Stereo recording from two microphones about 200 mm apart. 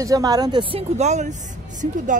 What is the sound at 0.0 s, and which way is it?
A woman's voice, 20° right (ahead or behind).